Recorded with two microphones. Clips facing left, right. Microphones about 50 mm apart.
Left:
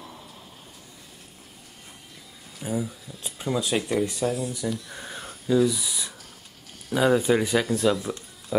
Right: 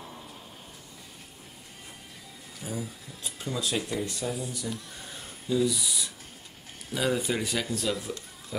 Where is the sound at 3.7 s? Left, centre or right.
Left.